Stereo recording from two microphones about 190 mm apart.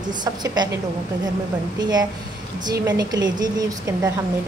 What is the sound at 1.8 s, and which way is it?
A woman's voice, 20° right (ahead or behind).